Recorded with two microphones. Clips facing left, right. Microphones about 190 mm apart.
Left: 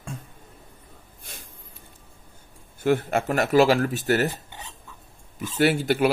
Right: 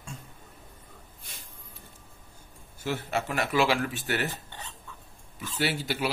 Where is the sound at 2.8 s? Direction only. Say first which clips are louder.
Left 8 dB; 50° left (ahead or behind).